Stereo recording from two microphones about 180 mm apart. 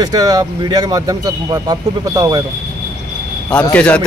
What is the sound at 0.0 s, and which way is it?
Speech, 20° right (ahead or behind).